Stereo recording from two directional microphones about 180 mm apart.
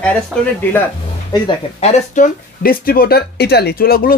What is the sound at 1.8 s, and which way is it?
Speech, 40° left (ahead or behind).